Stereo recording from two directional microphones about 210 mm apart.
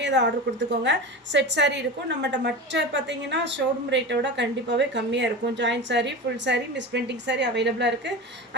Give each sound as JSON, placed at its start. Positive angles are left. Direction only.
{"t": 0.0, "sound": "a woman's voice", "side_deg": -55}